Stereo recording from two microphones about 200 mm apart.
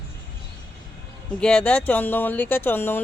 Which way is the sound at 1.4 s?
5° left (ahead or behind).